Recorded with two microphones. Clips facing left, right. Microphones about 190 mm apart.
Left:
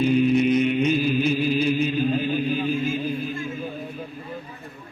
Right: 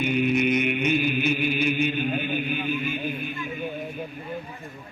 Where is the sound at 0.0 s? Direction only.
30° left (ahead or behind).